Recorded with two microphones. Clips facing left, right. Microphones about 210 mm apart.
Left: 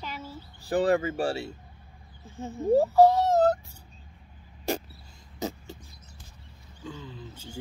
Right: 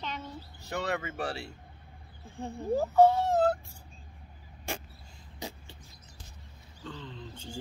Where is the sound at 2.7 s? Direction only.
35° left (ahead or behind).